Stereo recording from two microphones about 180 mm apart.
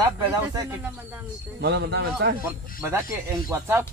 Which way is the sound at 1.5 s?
70° right (ahead or behind).